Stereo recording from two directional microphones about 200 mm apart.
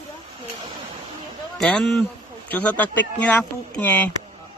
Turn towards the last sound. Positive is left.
turn(degrees=5)  # may be behind; listen again after turning